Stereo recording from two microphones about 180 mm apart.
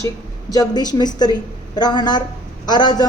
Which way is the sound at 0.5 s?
20° left (ahead or behind).